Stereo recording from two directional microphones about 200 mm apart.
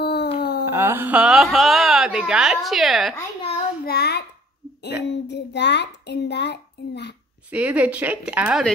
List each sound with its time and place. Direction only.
0.0 s a sound: 55° left (ahead or behind)
0.7 s speech: 10° right (ahead or behind)
3.8 s child singing: 50° left (ahead or behind)
5.0 s a child's voice: 60° left (ahead or behind)
7.4 s a woman's voice: 5° right (ahead or behind)